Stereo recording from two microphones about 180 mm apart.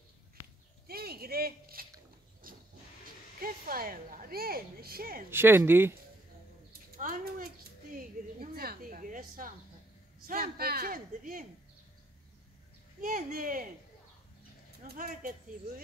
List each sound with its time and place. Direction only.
0.8 s a sound: 60° right (ahead or behind)
2.4 s vehicle: 50° right (ahead or behind)
3.3 s speech: 55° right (ahead or behind)
5.3 s speech: 10° right (ahead or behind)
7.0 s speech: 50° right (ahead or behind)
13.0 s speech: 50° right (ahead or behind)
14.8 s speech: 55° right (ahead or behind)